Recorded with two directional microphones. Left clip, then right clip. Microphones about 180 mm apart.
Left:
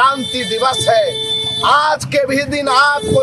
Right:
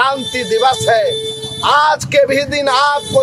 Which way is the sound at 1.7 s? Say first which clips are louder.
Right 2 dB; 5° right (ahead or behind).